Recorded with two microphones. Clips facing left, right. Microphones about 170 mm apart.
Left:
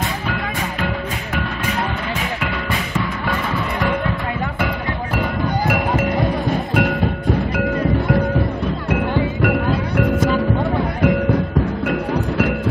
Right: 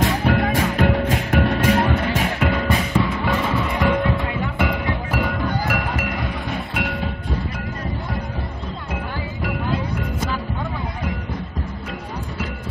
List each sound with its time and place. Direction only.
0.3 s music: 50° right (ahead or behind)
5.7 s music: 25° left (ahead or behind)
9.1 s music: 65° left (ahead or behind)
11.9 s music: 65° left (ahead or behind)